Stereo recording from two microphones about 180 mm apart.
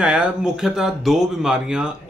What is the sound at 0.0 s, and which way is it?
Speech, 5° right (ahead or behind).